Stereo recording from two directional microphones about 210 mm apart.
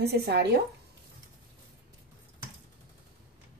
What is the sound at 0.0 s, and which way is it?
Speech, 50° right (ahead or behind).